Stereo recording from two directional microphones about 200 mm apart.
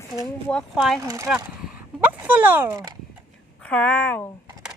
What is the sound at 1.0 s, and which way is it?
Speech, 15° right (ahead or behind).